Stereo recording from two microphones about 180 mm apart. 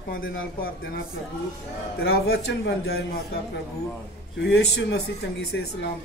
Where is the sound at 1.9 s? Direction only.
60° left (ahead or behind).